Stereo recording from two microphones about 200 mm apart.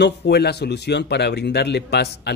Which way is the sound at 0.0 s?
55° left (ahead or behind).